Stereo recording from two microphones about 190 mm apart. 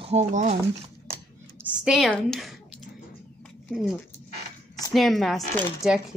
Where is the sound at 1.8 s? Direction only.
5° right (ahead or behind).